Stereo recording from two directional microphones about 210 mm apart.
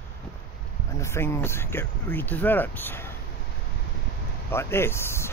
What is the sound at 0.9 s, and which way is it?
Speech, 15° left (ahead or behind).